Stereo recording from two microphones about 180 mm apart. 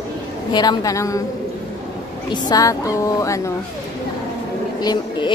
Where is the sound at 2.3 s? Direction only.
20° left (ahead or behind).